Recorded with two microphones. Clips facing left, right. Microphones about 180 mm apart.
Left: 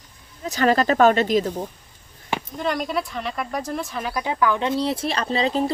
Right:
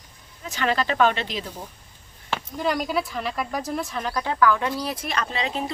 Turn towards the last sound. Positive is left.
turn(degrees=35)  # may be behind; listen again after turning